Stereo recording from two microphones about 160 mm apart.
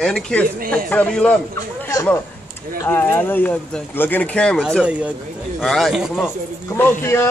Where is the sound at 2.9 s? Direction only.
10° left (ahead or behind); by 6.3 s 5° right (ahead or behind).